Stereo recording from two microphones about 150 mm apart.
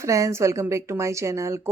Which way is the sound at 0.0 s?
20° right (ahead or behind).